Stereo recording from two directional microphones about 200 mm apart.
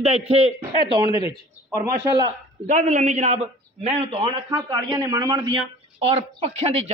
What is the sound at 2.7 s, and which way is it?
A man's voice, 35° right (ahead or behind).